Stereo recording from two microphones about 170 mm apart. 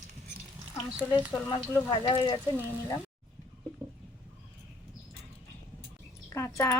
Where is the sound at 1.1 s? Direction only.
20° left (ahead or behind).